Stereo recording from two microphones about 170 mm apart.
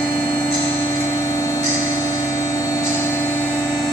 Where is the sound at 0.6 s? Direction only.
15° left (ahead or behind).